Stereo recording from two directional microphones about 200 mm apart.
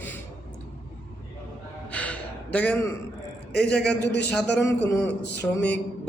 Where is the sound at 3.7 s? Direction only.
5° left (ahead or behind).